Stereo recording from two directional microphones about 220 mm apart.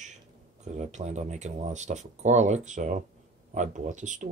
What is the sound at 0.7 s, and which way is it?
Speech, 30° right (ahead or behind).